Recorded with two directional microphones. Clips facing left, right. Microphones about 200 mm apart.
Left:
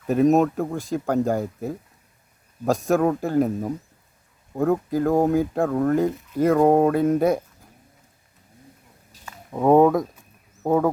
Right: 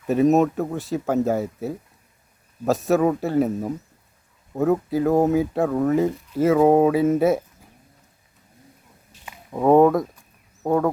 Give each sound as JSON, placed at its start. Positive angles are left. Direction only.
{"t": 0.1, "sound": "speech", "side_deg": 0}
{"t": 9.5, "sound": "speech", "side_deg": 0}